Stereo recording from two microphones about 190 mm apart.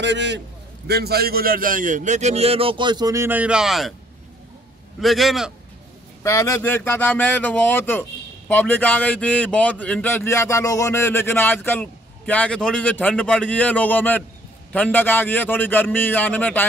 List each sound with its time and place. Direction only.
0.0 s a man's voice: 65° right (ahead or behind); by 3.9 s centre (ahead or behind)
5.0 s a man's voice: centre (ahead or behind)
6.2 s a man's voice: 15° left (ahead or behind)